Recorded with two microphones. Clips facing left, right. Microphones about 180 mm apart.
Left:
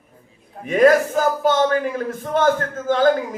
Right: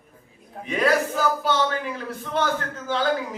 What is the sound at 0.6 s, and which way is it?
A man's voice, 45° left (ahead or behind).